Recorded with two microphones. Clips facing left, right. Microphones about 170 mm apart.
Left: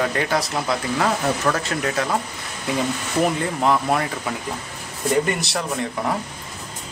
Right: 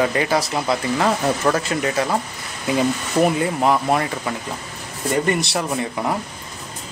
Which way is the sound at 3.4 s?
5° right (ahead or behind).